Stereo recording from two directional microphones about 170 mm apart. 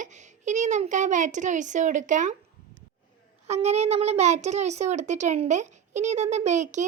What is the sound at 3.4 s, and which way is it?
A child's voice, 40° right (ahead or behind).